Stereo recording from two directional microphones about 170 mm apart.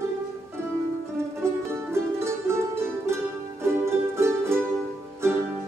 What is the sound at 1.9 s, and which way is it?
Music, 15° right (ahead or behind).